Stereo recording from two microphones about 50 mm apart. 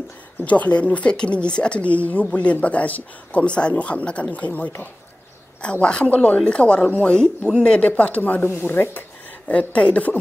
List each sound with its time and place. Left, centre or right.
0.5 s speech: left
7.1 s speech: centre; by 8.5 s left
8.5 s speech: left
9.5 s speech: left